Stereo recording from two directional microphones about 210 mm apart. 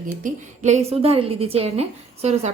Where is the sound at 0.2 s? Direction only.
35° right (ahead or behind).